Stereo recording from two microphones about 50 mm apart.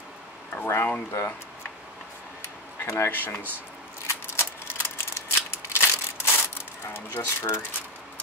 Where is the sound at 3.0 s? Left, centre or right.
Left.